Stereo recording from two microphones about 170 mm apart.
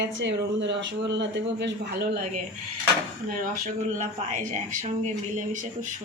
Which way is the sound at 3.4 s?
50° right (ahead or behind).